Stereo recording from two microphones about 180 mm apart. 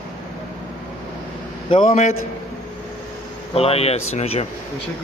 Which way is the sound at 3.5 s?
35° left (ahead or behind).